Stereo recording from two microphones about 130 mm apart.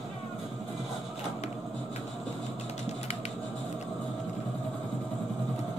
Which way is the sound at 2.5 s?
60° left (ahead or behind).